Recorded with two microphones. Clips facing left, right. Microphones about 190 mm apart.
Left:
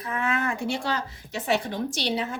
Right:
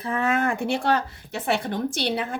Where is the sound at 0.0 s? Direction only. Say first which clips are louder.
Right 4 dB; 35° right (ahead or behind).